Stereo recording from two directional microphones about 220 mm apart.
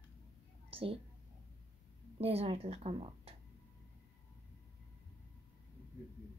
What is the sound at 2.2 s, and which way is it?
Speech, 25° right (ahead or behind).